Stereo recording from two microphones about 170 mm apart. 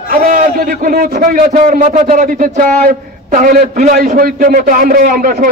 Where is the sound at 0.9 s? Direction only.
55° right (ahead or behind).